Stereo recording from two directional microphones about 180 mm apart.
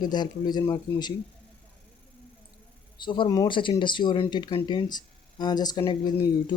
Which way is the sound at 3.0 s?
25° left (ahead or behind).